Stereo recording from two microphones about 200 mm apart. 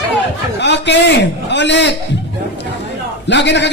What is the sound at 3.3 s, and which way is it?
Speech, 60° left (ahead or behind).